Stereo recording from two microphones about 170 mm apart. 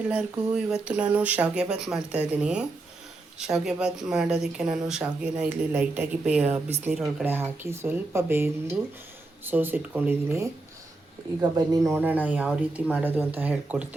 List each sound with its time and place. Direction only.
0.1 s speech: 5° right (ahead or behind)
11.9 s speech: 10° right (ahead or behind)